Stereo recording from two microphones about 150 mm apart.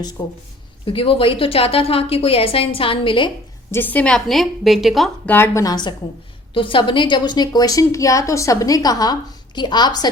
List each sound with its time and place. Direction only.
0.2 s a woman's voice: 30° left (ahead or behind)
3.7 s a woman's voice: 15° left (ahead or behind)
5.3 s a woman's voice: 15° left (ahead or behind)